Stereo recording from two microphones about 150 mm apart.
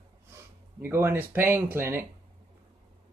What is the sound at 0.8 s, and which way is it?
Speech, 15° right (ahead or behind).